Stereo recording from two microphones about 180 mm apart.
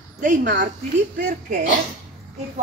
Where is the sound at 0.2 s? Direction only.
50° right (ahead or behind).